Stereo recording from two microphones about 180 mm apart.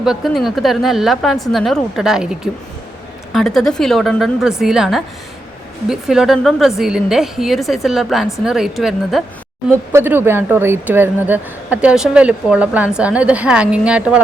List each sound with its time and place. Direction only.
0.0 s a woman's voice: centre (ahead or behind)
9.9 s speech: 10° right (ahead or behind)